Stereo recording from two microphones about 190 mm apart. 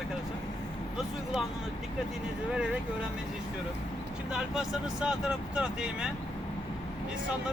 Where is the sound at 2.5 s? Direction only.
5° right (ahead or behind).